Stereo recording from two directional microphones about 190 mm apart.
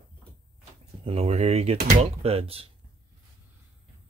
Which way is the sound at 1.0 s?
30° right (ahead or behind).